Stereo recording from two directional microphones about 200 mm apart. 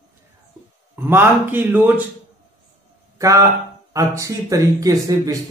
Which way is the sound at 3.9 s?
15° right (ahead or behind).